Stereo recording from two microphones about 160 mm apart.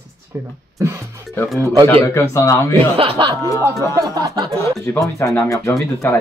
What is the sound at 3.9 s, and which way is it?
Speech, 25° right (ahead or behind).